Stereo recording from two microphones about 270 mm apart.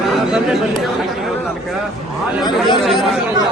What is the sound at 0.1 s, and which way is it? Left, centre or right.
Chatter, centre.